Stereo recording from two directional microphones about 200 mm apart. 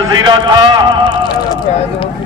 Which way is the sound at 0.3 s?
25° right (ahead or behind).